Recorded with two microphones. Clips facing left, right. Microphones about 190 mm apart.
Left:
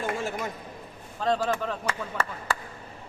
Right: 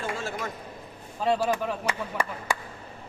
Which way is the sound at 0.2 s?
15° left (ahead or behind).